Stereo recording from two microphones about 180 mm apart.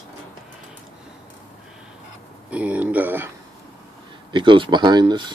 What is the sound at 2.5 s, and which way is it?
Speech, 5° right (ahead or behind).